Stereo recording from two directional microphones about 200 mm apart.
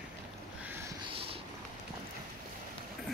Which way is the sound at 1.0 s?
30° right (ahead or behind).